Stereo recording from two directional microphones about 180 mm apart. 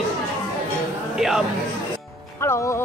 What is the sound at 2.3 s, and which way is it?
Music, 15° left (ahead or behind).